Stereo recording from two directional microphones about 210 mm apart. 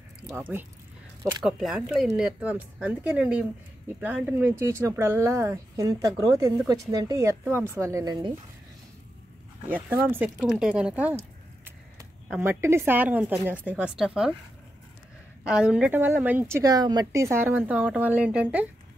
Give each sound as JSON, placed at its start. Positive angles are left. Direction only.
{"t": 0.3, "sound": "a woman's voice", "side_deg": -10}
{"t": 9.7, "sound": "a woman's voice", "side_deg": -10}
{"t": 12.3, "sound": "a woman's voice", "side_deg": -10}
{"t": 15.4, "sound": "a woman's voice", "side_deg": -5}